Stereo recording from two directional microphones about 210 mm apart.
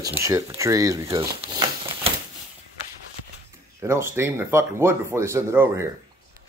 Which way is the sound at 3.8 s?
10° right (ahead or behind).